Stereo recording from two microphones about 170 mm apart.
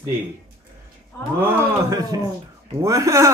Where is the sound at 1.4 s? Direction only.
20° right (ahead or behind).